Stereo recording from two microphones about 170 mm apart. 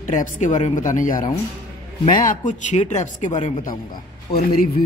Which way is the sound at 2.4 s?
45° left (ahead or behind).